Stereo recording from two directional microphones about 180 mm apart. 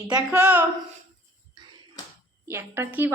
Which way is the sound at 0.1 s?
5° right (ahead or behind).